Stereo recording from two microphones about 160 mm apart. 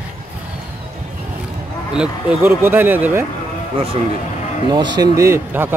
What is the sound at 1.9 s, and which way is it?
Speech, 5° right (ahead or behind).